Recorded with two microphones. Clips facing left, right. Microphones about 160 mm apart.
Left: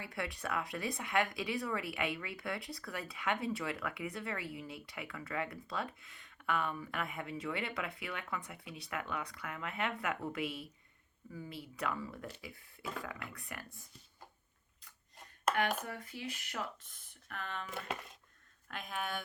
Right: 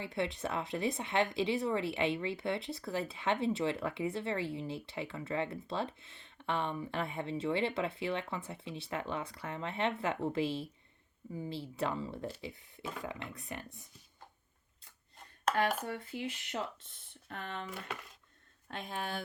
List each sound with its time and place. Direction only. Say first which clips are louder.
0.0 s speech: right 5 dB; 25° right (ahead or behind)
15.5 s a sound: right 1 dB; 5° left (ahead or behind)
15.8 s speech: right 5 dB; 30° right (ahead or behind)
18.7 s speech: right 1 dB; 30° right (ahead or behind)